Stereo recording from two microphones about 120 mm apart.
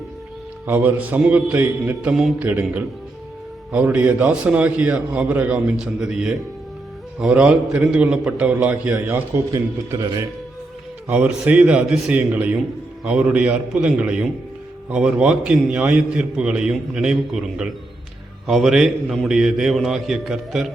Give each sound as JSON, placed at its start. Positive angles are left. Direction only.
{"t": 0.7, "sound": "a man's voice", "side_deg": -15}
{"t": 10.0, "sound": "a man's voice", "side_deg": -35}
{"t": 11.1, "sound": "a man's voice", "side_deg": -10}